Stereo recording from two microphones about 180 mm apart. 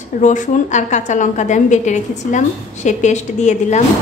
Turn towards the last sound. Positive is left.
turn(degrees=40)  # may be behind; listen again after turning